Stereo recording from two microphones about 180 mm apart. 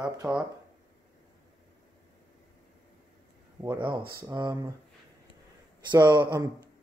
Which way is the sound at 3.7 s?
25° right (ahead or behind).